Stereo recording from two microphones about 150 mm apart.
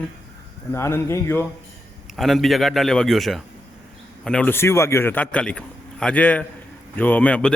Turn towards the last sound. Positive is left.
turn(degrees=10)  # may be behind; listen again after turning